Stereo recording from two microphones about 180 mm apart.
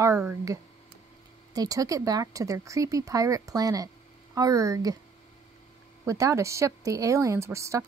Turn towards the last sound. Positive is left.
turn(degrees=-15)  # may be behind; listen again after turning